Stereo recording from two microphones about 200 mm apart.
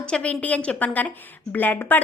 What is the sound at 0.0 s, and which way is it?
A woman's voice, 5° left (ahead or behind).